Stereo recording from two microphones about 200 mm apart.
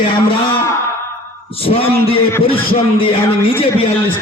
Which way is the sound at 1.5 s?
30° left (ahead or behind).